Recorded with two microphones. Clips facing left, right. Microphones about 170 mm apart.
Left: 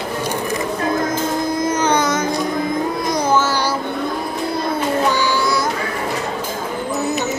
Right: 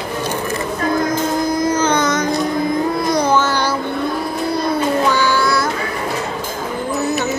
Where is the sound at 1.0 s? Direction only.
25° left (ahead or behind); by 3.7 s 5° left (ahead or behind).